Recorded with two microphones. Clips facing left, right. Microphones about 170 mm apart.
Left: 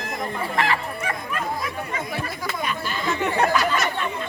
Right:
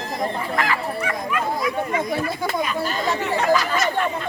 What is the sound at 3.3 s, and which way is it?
Chatter, 60° left (ahead or behind).